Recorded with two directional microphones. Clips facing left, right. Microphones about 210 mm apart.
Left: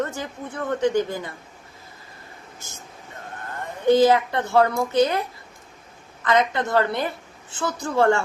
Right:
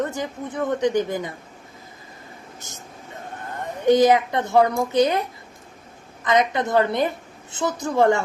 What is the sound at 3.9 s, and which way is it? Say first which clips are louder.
A woman's voice: right 1 dB; 20° right (ahead or behind).